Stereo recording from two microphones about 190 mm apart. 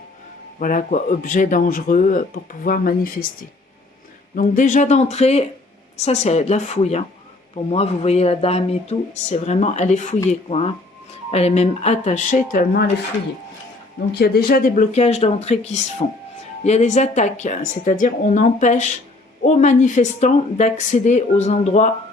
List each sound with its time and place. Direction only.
0.6 s speech: 45° left (ahead or behind)
4.4 s a woman's voice: 40° left (ahead or behind)
14.1 s a woman's voice: 60° left (ahead or behind); by 21.8 s 35° left (ahead or behind)